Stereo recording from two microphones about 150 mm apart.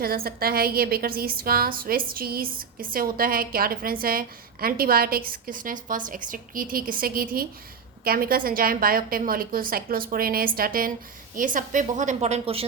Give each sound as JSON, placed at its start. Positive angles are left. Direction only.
{"t": 0.0, "sound": "a woman's voice", "side_deg": -80}
{"t": 11.3, "sound": "a woman's voice", "side_deg": -60}